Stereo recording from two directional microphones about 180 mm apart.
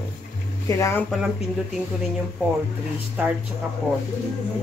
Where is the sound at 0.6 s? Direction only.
15° left (ahead or behind).